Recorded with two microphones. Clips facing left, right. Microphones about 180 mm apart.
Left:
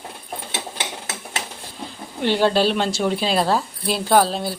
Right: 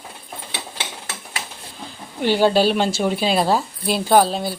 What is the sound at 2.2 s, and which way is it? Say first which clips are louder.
Speech: right 2 dB; 5° right (ahead or behind).